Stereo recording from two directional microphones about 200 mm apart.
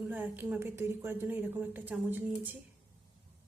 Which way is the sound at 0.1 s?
10° right (ahead or behind).